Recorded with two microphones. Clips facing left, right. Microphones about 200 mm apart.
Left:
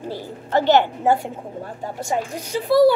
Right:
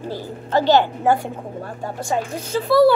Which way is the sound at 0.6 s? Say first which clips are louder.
Even; 20° left (ahead or behind).